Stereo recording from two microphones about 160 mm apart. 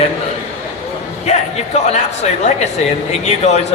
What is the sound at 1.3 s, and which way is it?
Speech, 45° left (ahead or behind).